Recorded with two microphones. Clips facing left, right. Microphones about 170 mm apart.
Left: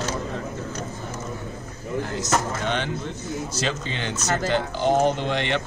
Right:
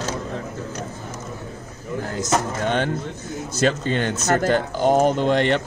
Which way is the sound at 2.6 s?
45° right (ahead or behind).